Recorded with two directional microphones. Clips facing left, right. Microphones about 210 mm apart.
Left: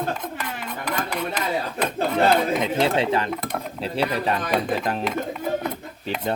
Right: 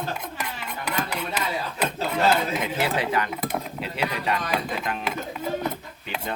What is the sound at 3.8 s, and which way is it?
Speech, 30° left (ahead or behind).